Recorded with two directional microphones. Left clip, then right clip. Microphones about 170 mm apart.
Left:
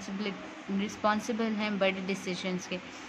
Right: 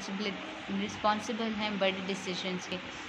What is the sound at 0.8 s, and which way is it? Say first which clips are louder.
Speech: left 1 dB; 40° left (ahead or behind).